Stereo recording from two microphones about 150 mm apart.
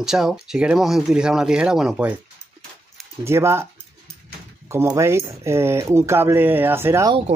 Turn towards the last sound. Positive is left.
turn(degrees=-15)  # may be behind; listen again after turning